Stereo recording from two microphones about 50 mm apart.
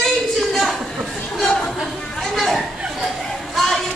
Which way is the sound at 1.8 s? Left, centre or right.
Centre.